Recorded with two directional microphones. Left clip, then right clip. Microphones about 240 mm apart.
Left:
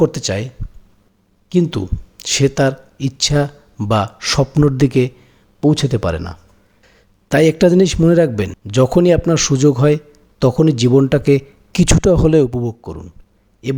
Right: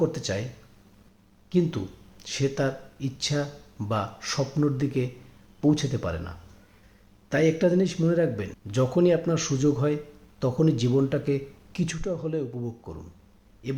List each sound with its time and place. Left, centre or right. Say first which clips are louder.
0.0 s speech: left 11 dB; left
1.5 s speech: left 9 dB; left